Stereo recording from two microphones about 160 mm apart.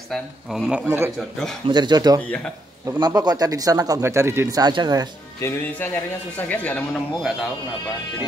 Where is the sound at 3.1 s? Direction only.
25° right (ahead or behind).